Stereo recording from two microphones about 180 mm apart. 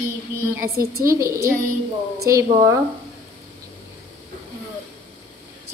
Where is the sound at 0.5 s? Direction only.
15° right (ahead or behind).